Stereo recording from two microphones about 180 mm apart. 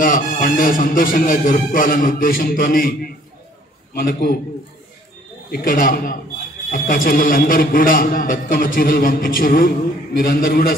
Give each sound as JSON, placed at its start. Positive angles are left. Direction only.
{"t": 0.0, "sound": "a man's voice", "side_deg": 50}
{"t": 3.9, "sound": "a man's voice", "side_deg": 55}
{"t": 5.5, "sound": "a man's voice", "side_deg": 55}